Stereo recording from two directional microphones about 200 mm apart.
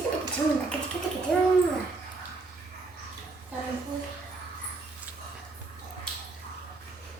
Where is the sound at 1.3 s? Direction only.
5° left (ahead or behind).